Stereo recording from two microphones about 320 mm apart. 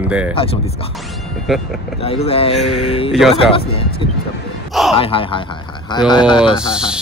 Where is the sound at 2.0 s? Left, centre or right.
Centre.